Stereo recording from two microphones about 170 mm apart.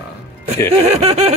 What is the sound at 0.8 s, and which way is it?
Speech, 35° right (ahead or behind).